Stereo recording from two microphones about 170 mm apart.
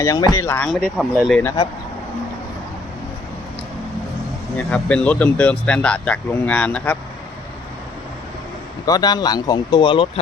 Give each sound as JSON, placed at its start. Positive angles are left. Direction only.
{"t": 0.0, "sound": "speech", "side_deg": 20}
{"t": 0.9, "sound": "speech", "side_deg": -5}
{"t": 4.5, "sound": "speech", "side_deg": 5}
{"t": 8.9, "sound": "speech", "side_deg": 25}